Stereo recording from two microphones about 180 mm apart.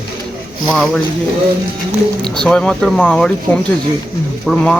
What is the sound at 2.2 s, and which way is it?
Speech, 5° left (ahead or behind).